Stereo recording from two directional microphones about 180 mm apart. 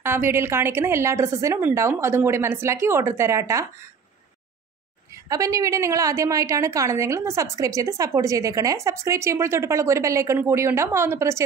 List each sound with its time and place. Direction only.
0.0 s a woman's voice: 15° right (ahead or behind)
5.3 s a woman's voice: 20° right (ahead or behind)